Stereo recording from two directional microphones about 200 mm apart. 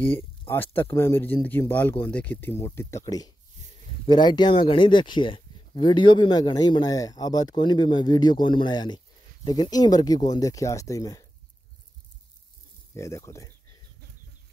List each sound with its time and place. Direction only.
0.5 s speech: 10° left (ahead or behind)
12.9 s speech: 15° left (ahead or behind)